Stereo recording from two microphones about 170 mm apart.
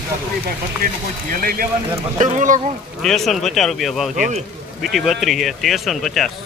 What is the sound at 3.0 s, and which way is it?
Speech, centre (ahead or behind).